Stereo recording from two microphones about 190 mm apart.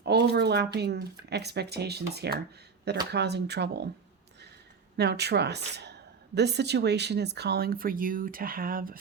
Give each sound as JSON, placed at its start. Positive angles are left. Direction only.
{"t": 0.0, "sound": "a woman's voice", "side_deg": -60}
{"t": 4.9, "sound": "a woman's voice", "side_deg": -60}